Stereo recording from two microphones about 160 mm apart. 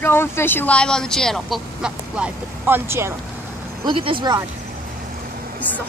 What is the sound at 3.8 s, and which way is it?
Speech, 30° right (ahead or behind).